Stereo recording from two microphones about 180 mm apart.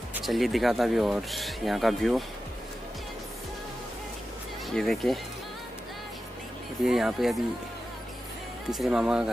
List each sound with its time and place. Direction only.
0.1 s speech: centre (ahead or behind)
4.7 s speech: centre (ahead or behind)
6.9 s speech: 5° right (ahead or behind)
8.6 s speech: centre (ahead or behind)